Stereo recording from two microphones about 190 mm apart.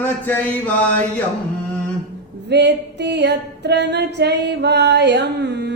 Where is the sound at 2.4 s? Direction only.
60° right (ahead or behind).